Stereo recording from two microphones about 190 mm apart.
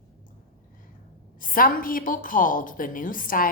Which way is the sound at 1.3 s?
45° left (ahead or behind).